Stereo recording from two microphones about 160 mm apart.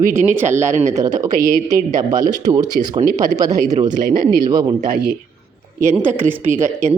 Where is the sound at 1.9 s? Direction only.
20° right (ahead or behind).